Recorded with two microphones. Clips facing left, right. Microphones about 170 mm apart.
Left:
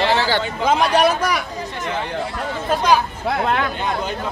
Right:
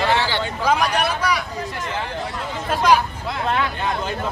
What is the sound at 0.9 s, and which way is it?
Speech, 45° left (ahead or behind).